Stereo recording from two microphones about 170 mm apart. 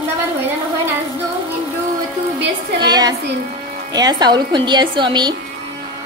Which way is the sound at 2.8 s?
25° right (ahead or behind).